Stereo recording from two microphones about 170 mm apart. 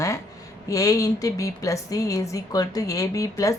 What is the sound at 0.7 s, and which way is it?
Speech, 20° left (ahead or behind).